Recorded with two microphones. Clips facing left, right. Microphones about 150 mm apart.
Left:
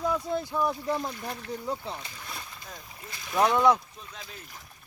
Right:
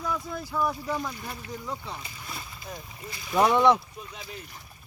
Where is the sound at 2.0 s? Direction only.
5° right (ahead or behind).